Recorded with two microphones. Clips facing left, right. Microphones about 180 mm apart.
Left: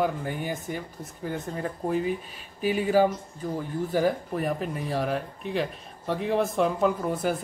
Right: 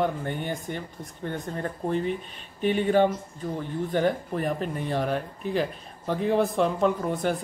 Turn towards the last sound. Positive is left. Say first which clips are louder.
# right 1 dB
turn(degrees=0)  # may be behind; listen again after turning